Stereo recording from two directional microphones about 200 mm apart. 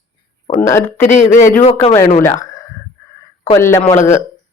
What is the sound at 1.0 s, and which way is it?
Speech, 40° left (ahead or behind).